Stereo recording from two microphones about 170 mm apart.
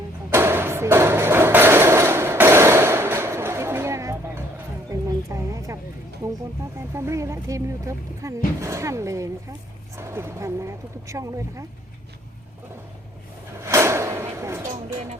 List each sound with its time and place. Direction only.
0.3 s thump: 15° right (ahead or behind)
6.9 s speech: 15° right (ahead or behind)
13.7 s a sound: 15° right (ahead or behind)